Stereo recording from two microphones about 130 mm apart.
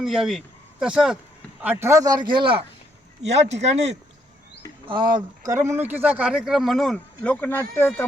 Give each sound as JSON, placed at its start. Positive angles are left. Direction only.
{"t": 0.0, "sound": "speech", "side_deg": -5}
{"t": 1.6, "sound": "a man's voice", "side_deg": -15}
{"t": 3.2, "sound": "speech", "side_deg": -60}
{"t": 4.9, "sound": "a man's voice", "side_deg": -35}
{"t": 5.5, "sound": "speech", "side_deg": -15}